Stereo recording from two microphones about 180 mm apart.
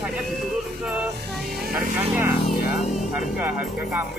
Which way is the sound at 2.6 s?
45° left (ahead or behind).